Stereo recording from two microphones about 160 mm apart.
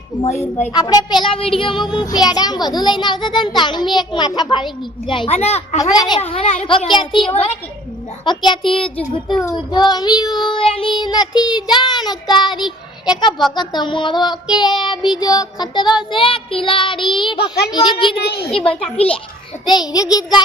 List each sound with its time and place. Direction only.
0.3 s a child's voice: 10° left (ahead or behind)
0.7 s a child's voice: 25° left (ahead or behind); by 5.8 s 40° left (ahead or behind)
5.8 s a child's voice: 25° left (ahead or behind)
6.2 s a child's voice: 40° left (ahead or behind)
8.2 s a child's voice: 30° left (ahead or behind)
19.7 s a child's voice: 25° left (ahead or behind)